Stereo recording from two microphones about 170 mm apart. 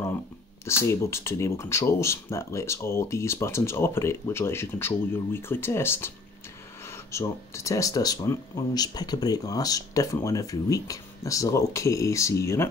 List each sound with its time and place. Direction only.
0.7 s speech: 15° left (ahead or behind)